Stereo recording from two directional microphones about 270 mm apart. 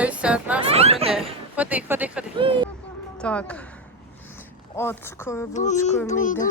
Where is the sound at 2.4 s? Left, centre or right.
Centre.